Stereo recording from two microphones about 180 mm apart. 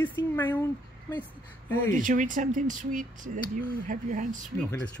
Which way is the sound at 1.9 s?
45° right (ahead or behind).